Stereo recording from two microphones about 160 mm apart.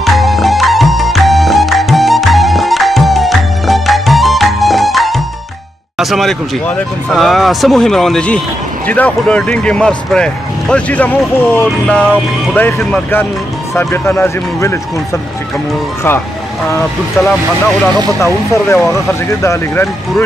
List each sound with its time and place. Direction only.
0.0 s music: centre (ahead or behind)
5.9 s speech: centre (ahead or behind); by 14.8 s 15° left (ahead or behind)
18.2 s speech: 15° left (ahead or behind)